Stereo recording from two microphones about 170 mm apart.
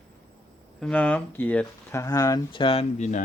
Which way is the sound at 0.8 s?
10° left (ahead or behind).